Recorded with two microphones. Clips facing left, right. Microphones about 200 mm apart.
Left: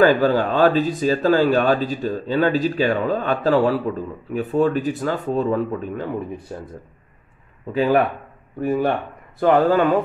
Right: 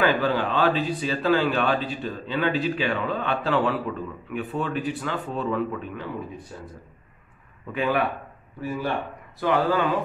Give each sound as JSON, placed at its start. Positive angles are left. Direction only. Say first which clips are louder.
{"t": 0.0, "sound": "speech", "louder": "left 7 dB", "side_deg": 45}
{"t": 7.7, "sound": "speech", "louder": "left 7 dB", "side_deg": 35}
{"t": 8.5, "sound": "speech", "louder": "left 7 dB", "side_deg": 55}